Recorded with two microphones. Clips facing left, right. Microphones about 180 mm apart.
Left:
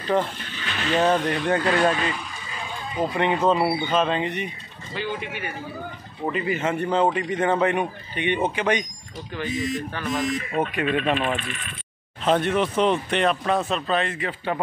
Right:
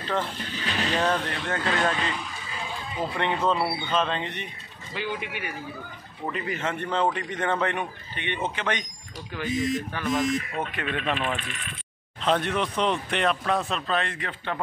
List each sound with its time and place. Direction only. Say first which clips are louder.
0.4 s speech: right 2 dB; 35° right (ahead or behind)
1.0 s a man's voice: left 6 dB; 10° left (ahead or behind)
3.2 s a man's voice: left 4 dB; 5° left (ahead or behind)
4.9 s speech: left 2 dB; 15° right (ahead or behind)
6.3 s a man's voice: left 6 dB; 5° left (ahead or behind)
9.4 s speech: even; centre (ahead or behind)
10.5 s a man's voice: left 7 dB; 15° left (ahead or behind)